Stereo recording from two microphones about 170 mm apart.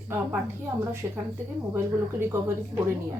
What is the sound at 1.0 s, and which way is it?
Speech, 15° right (ahead or behind).